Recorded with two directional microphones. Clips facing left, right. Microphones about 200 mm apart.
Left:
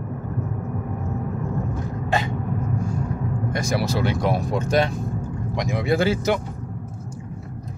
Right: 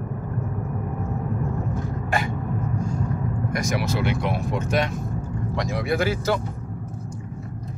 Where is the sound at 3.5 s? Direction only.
30° left (ahead or behind).